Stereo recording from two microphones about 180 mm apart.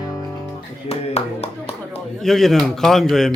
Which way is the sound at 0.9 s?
35° left (ahead or behind).